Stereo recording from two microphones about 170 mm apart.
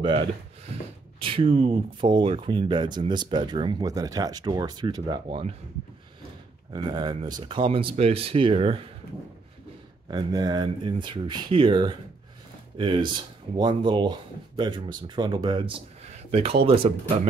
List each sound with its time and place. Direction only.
1.2 s speech: 30° right (ahead or behind)
6.7 s speech: 25° right (ahead or behind)
10.1 s speech: 25° right (ahead or behind)